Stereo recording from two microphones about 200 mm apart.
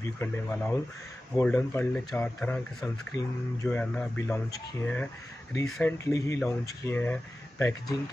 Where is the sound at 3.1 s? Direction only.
20° left (ahead or behind).